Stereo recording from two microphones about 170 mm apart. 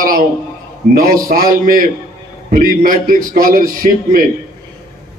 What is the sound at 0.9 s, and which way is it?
A man's voice, 55° right (ahead or behind).